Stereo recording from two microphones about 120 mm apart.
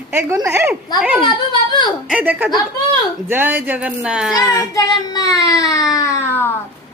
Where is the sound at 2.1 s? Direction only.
15° right (ahead or behind).